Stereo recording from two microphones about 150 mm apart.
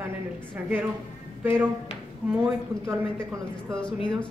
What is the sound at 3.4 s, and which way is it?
Speech, 5° left (ahead or behind).